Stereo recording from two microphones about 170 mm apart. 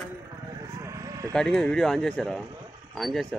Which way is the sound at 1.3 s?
5° left (ahead or behind).